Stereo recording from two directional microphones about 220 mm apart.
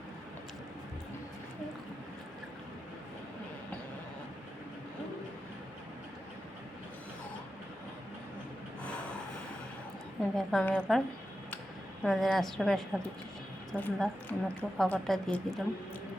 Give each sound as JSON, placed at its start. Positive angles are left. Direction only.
{"t": 10.3, "sound": "speech", "side_deg": 5}
{"t": 12.0, "sound": "a woman's voice", "side_deg": 0}